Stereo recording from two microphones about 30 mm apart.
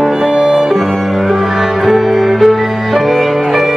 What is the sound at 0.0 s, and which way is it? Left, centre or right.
Music, centre.